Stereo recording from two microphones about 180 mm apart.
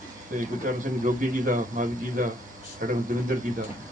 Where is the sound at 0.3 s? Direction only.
45° right (ahead or behind).